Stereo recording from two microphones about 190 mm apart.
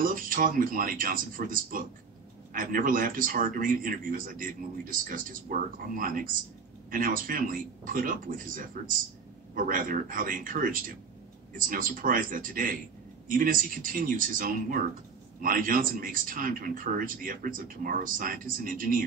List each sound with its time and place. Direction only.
0.0 s a man's voice: 45° right (ahead or behind)